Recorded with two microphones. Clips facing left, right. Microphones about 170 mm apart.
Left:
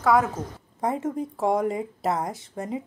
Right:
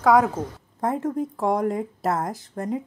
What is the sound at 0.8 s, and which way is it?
A woman's voice, centre (ahead or behind).